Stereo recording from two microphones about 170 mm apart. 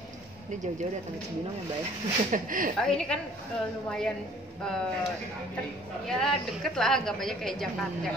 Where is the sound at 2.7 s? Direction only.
5° left (ahead or behind).